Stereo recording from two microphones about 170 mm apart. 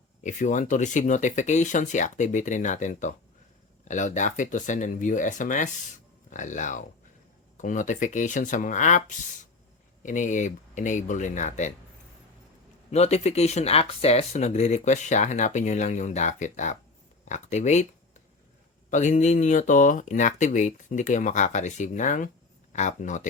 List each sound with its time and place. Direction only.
0.2 s speech: 45° left (ahead or behind)
12.9 s speech: 40° left (ahead or behind)
18.9 s speech: 45° left (ahead or behind)